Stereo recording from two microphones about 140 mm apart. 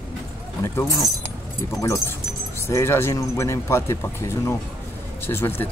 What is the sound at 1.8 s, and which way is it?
Speech, 20° left (ahead or behind).